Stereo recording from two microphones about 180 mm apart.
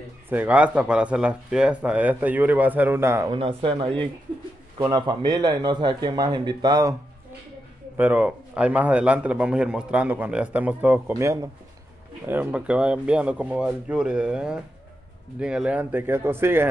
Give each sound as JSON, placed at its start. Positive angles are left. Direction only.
{"t": 0.3, "sound": "a man's voice", "side_deg": -10}
{"t": 3.3, "sound": "a man's voice", "side_deg": -30}
{"t": 8.0, "sound": "a man's voice", "side_deg": -10}